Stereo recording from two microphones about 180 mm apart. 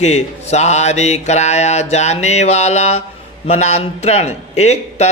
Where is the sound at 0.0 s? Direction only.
40° left (ahead or behind).